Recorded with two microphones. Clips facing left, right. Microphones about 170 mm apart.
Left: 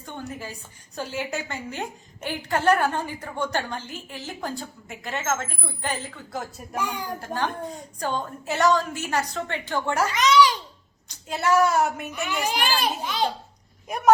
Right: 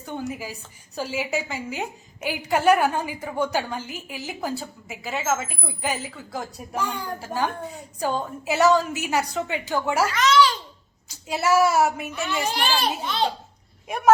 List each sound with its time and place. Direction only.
0.0 s a woman's voice: 10° right (ahead or behind)
6.7 s a child's voice: 10° left (ahead or behind)
7.2 s a woman's voice: 10° right (ahead or behind)
10.2 s a child's voice: 15° left (ahead or behind)
11.1 s speech: 5° right (ahead or behind)
12.2 s a child's voice: 15° left (ahead or behind)
13.8 s speech: centre (ahead or behind)